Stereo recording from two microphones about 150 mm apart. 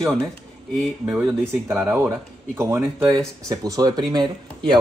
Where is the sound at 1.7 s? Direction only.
15° right (ahead or behind).